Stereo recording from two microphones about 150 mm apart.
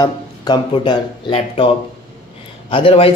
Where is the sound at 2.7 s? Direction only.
35° left (ahead or behind).